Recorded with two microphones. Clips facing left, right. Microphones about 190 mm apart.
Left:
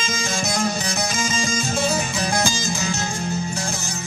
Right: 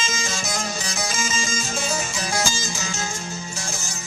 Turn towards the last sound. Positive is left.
turn(degrees=60)  # may be behind; listen again after turning